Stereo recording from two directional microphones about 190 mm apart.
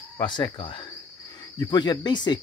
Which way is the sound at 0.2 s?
25° left (ahead or behind).